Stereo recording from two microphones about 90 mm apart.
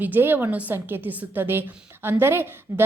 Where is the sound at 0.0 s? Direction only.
20° right (ahead or behind).